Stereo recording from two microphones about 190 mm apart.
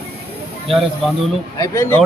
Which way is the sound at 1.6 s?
15° left (ahead or behind).